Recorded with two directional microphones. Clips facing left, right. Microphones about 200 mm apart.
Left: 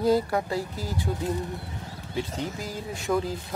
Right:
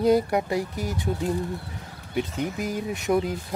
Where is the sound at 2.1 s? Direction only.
20° right (ahead or behind).